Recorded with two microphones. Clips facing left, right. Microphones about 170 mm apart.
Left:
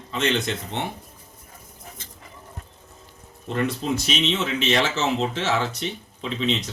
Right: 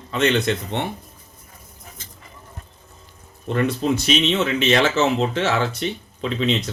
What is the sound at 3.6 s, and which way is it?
Speech, 65° right (ahead or behind).